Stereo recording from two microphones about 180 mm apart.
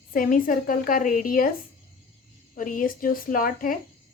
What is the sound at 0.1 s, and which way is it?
A woman's voice, 50° left (ahead or behind).